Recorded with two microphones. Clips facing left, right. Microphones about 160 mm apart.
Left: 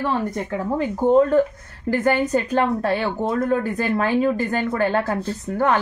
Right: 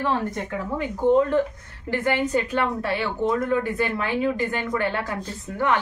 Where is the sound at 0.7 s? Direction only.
40° left (ahead or behind).